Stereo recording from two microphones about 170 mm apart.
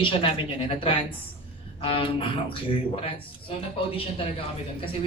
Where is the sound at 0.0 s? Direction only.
30° left (ahead or behind).